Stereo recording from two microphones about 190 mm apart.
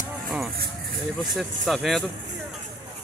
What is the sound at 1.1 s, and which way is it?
Speech, centre (ahead or behind).